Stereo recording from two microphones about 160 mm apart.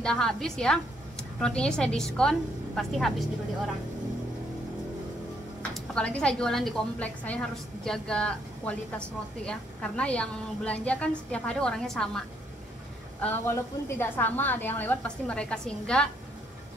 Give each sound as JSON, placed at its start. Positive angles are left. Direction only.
{"t": 0.0, "sound": "a woman's voice", "side_deg": 5}
{"t": 5.8, "sound": "a woman's voice", "side_deg": 5}